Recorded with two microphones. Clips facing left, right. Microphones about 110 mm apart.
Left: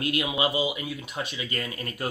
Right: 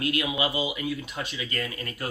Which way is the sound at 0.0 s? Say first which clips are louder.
Left 1 dB; 20° left (ahead or behind).